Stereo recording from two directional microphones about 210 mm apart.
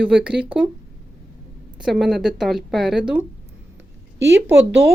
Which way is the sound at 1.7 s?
Centre (ahead or behind).